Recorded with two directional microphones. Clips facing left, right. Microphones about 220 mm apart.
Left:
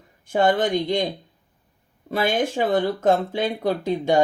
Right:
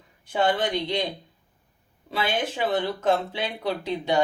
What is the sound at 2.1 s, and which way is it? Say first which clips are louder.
Speech: left 5 dB; 50° left (ahead or behind).